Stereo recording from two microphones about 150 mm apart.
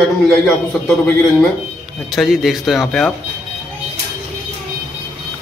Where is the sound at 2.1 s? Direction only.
Centre (ahead or behind).